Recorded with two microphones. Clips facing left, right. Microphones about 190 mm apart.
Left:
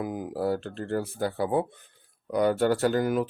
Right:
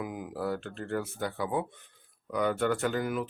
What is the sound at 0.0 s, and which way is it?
Speech, 35° left (ahead or behind).